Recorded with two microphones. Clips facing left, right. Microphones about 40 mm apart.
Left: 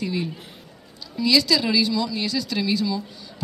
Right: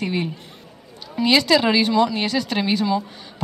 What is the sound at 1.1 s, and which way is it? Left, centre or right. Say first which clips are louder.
A woman's voice: right 3 dB; right.